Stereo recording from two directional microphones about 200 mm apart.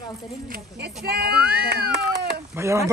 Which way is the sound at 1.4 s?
5° right (ahead or behind).